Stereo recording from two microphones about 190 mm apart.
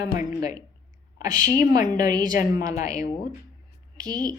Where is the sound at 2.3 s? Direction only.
45° left (ahead or behind).